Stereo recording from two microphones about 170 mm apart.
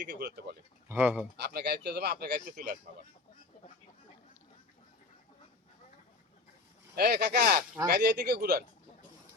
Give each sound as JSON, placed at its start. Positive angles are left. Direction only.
{"t": 0.0, "sound": "speech", "side_deg": -65}
{"t": 0.9, "sound": "speech", "side_deg": -10}
{"t": 1.4, "sound": "speech", "side_deg": -70}
{"t": 6.9, "sound": "speech", "side_deg": -65}
{"t": 7.9, "sound": "speech", "side_deg": -75}